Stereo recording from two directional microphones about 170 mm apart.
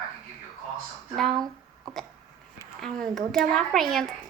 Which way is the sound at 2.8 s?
Centre (ahead or behind).